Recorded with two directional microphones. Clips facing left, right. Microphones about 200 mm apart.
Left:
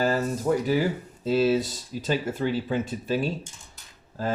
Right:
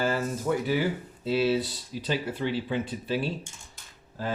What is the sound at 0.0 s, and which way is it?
Speech, 40° left (ahead or behind).